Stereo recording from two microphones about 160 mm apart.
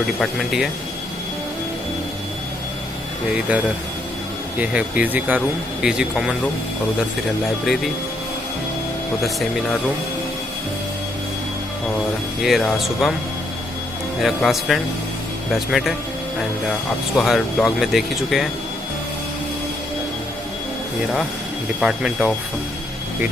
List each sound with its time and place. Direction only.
0.2 s speech: centre (ahead or behind)
4.6 s speech: 10° right (ahead or behind)
12.4 s speech: centre (ahead or behind)
14.2 s speech: centre (ahead or behind)
17.1 s speech: centre (ahead or behind)
21.7 s speech: 5° right (ahead or behind)